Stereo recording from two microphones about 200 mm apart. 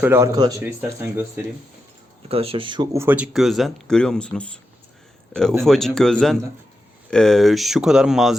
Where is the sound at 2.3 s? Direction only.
30° right (ahead or behind); by 4.6 s 5° left (ahead or behind).